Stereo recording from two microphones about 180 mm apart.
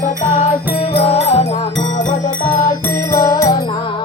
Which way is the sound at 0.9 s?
35° left (ahead or behind).